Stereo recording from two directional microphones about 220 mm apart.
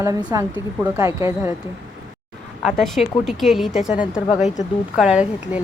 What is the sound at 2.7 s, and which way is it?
Speech, centre (ahead or behind).